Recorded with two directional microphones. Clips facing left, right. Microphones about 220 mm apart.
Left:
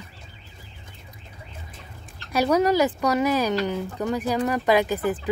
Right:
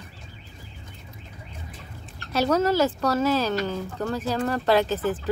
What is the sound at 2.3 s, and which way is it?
Speech, 10° left (ahead or behind).